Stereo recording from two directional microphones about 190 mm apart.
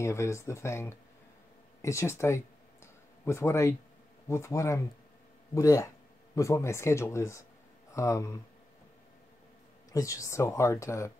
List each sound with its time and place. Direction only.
0.0 s speech: 15° left (ahead or behind)
1.8 s a sound: 15° left (ahead or behind)
4.3 s speech: 15° left (ahead or behind)
9.9 s speech: 15° left (ahead or behind)